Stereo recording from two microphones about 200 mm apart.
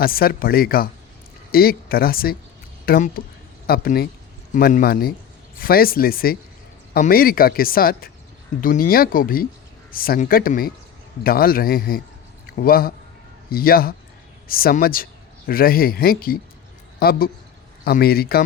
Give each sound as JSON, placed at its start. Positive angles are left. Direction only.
{"t": 0.0, "sound": "speech", "side_deg": 50}